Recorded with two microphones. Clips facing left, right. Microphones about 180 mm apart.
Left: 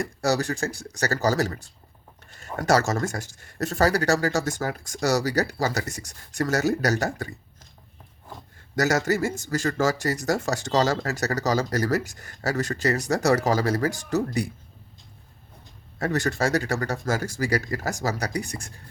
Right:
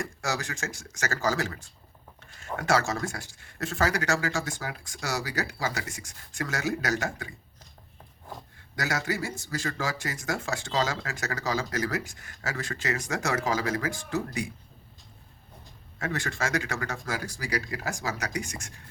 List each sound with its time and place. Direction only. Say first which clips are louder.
0.0 s speech: left 8 dB; 35° left (ahead or behind)
8.7 s speech: left 8 dB; 45° left (ahead or behind)
16.0 s speech: left 7 dB; 40° left (ahead or behind)